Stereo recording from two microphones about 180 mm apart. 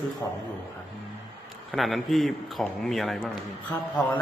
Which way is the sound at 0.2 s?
15° left (ahead or behind).